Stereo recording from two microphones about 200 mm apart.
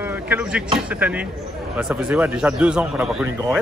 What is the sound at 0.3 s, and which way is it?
A man's voice, 5° right (ahead or behind).